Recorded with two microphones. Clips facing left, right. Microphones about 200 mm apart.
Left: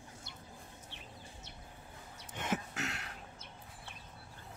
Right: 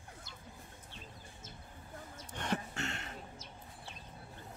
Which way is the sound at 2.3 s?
5° left (ahead or behind).